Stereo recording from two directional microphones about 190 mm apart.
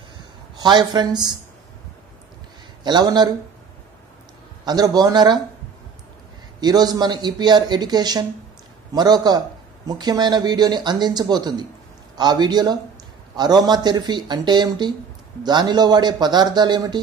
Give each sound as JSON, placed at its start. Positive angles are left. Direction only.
{"t": 0.6, "sound": "speech", "side_deg": -20}
{"t": 2.8, "sound": "speech", "side_deg": -20}
{"t": 4.6, "sound": "speech", "side_deg": -20}
{"t": 6.6, "sound": "speech", "side_deg": -20}